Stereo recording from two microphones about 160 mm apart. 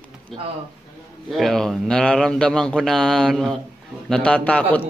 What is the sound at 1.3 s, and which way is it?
A man's voice, centre (ahead or behind).